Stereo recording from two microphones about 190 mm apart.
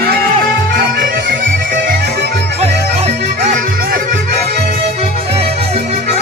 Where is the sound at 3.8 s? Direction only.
50° right (ahead or behind).